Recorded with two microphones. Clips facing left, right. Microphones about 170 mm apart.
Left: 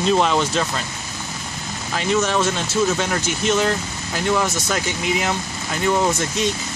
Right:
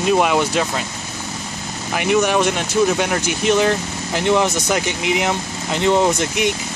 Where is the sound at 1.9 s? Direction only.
15° right (ahead or behind).